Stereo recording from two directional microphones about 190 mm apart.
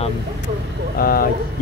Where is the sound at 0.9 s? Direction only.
50° left (ahead or behind).